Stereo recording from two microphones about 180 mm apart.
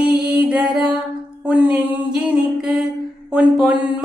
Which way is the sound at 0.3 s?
5° right (ahead or behind).